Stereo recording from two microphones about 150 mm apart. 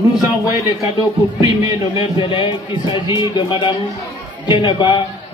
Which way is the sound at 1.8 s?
35° left (ahead or behind).